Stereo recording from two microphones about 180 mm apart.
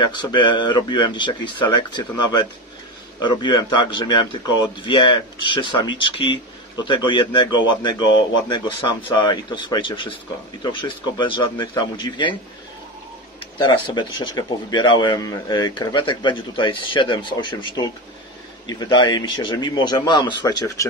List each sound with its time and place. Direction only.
0.0 s a man's voice: 25° left (ahead or behind)
13.6 s a man's voice: 25° left (ahead or behind)